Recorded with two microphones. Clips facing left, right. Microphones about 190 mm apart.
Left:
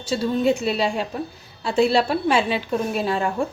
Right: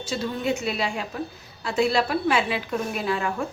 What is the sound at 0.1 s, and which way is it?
A woman's voice, 30° left (ahead or behind).